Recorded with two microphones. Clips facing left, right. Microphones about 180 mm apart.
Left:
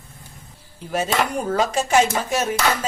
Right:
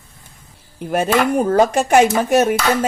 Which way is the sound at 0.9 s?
55° right (ahead or behind).